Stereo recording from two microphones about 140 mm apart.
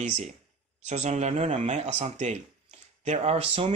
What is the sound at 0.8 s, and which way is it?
A man's voice, 55° right (ahead or behind).